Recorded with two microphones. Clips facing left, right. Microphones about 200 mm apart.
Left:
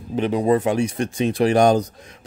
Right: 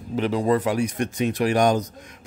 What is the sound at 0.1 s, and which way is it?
Speech, 20° left (ahead or behind).